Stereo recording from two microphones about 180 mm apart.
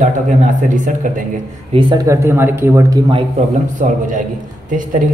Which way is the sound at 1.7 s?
25° right (ahead or behind).